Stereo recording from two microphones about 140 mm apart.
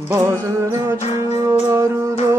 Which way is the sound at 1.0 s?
50° left (ahead or behind).